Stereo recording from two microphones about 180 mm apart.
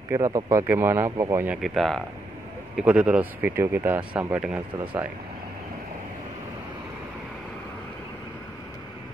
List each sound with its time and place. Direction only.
0.1 s speech: 15° right (ahead or behind)
1.6 s speech: centre (ahead or behind)